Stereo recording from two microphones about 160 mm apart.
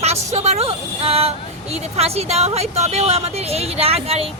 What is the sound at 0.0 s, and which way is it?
Speech, 40° right (ahead or behind).